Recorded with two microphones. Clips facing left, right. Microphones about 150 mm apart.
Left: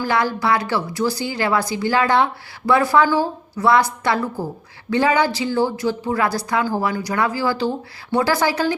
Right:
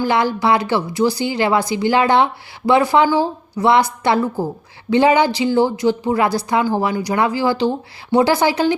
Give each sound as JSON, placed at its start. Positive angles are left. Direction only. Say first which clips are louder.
{"t": 0.0, "sound": "a woman's voice", "louder": "right 3 dB", "side_deg": -25}